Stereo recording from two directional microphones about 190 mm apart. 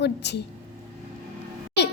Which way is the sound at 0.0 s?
60° left (ahead or behind).